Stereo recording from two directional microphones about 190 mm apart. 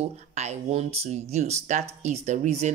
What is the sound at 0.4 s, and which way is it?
Speech, 35° right (ahead or behind).